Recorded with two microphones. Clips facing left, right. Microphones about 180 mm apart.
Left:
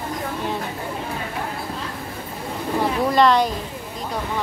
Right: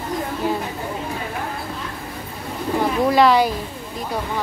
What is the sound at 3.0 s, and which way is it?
Speech, 5° right (ahead or behind).